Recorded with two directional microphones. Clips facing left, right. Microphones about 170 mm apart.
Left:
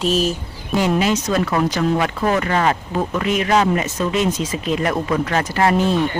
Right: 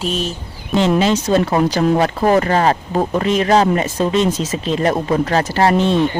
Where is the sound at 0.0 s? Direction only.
5° left (ahead or behind).